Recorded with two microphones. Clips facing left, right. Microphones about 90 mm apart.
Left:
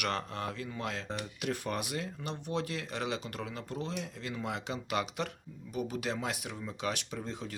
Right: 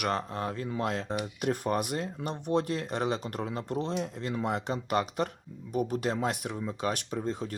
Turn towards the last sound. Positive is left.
turn(degrees=-40)  # may be behind; listen again after turning